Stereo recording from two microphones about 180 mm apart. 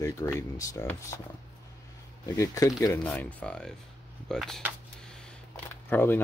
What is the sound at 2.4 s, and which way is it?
Speech, 15° left (ahead or behind).